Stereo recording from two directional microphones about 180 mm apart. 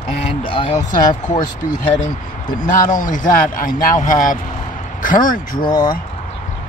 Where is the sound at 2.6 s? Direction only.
45° left (ahead or behind).